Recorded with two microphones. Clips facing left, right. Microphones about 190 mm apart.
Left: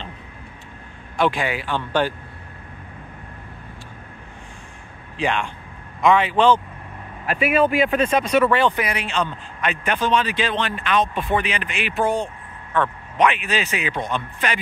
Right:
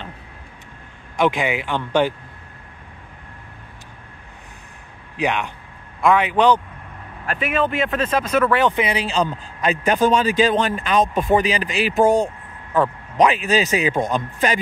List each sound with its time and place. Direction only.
1.2 s speech: 20° right (ahead or behind)
5.1 s a man's voice: 10° right (ahead or behind)
7.2 s speech: 10° left (ahead or behind)
8.7 s a man's voice: 25° right (ahead or behind)